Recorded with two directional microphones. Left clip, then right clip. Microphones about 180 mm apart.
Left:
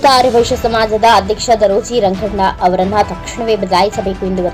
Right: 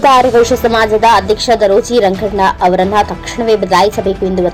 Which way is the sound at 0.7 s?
35° right (ahead or behind).